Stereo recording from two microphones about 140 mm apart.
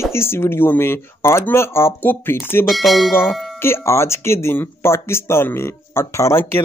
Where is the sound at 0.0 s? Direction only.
20° left (ahead or behind).